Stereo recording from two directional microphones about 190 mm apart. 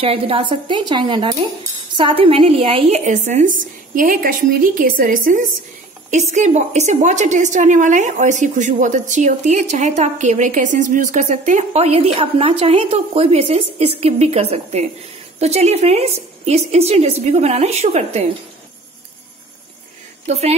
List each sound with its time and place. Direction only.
0.0 s a woman's voice: 30° right (ahead or behind)
20.2 s a woman's voice: 35° right (ahead or behind)